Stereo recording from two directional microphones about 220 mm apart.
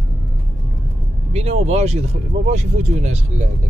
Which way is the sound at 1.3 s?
30° right (ahead or behind).